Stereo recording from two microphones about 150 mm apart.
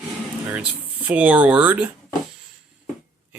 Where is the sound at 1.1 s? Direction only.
10° right (ahead or behind).